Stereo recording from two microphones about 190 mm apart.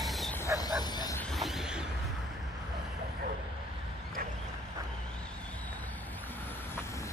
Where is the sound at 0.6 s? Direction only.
20° left (ahead or behind).